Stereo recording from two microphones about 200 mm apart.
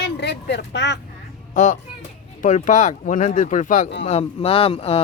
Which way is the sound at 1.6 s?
40° left (ahead or behind).